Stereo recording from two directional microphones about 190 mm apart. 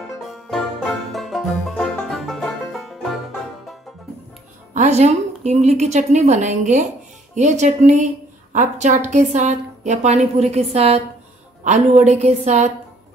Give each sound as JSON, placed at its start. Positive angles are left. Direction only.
{"t": 1.1, "sound": "music", "side_deg": 0}
{"t": 4.7, "sound": "a woman's voice", "side_deg": -35}